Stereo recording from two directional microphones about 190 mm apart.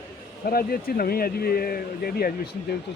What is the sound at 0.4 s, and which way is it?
Speech, 50° left (ahead or behind).